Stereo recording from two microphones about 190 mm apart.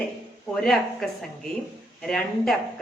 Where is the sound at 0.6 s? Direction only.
5° left (ahead or behind).